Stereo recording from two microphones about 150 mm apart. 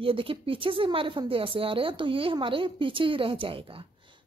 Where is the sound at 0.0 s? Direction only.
35° right (ahead or behind).